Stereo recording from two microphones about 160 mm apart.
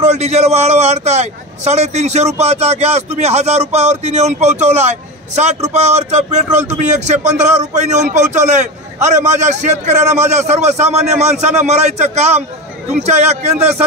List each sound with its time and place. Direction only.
0.0 s a man's voice: 45° right (ahead or behind)